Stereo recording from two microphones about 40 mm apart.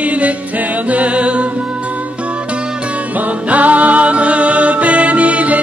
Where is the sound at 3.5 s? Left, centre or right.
Right.